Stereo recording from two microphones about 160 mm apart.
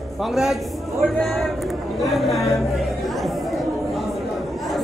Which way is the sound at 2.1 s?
Centre (ahead or behind).